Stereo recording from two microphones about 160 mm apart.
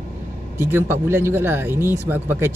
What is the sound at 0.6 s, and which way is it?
Speech, 15° right (ahead or behind).